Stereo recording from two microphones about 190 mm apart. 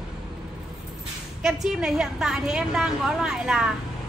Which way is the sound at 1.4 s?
5° right (ahead or behind).